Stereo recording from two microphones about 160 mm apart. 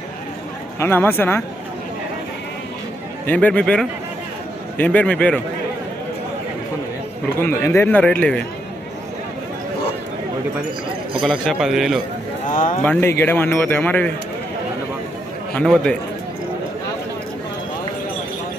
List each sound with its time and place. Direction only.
0.7 s a man's voice: 15° left (ahead or behind)
3.3 s a man's voice: 10° left (ahead or behind)
7.3 s a man's voice: 15° left (ahead or behind)
11.2 s a man's voice: centre (ahead or behind)
12.4 s speech: 55° left (ahead or behind)
12.8 s a man's voice: 15° left (ahead or behind)
15.5 s a man's voice: 5° left (ahead or behind)